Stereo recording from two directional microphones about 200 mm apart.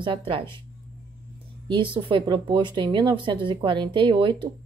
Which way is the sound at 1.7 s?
25° right (ahead or behind).